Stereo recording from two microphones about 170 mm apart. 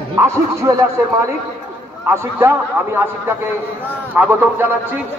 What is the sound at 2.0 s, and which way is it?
A man's voice, 15° right (ahead or behind).